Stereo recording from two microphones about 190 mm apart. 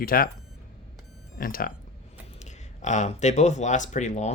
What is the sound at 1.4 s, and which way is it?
Speech, 50° left (ahead or behind).